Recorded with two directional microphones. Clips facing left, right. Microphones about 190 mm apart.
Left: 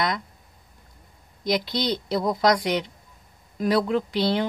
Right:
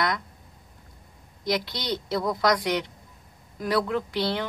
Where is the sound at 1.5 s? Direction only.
20° left (ahead or behind).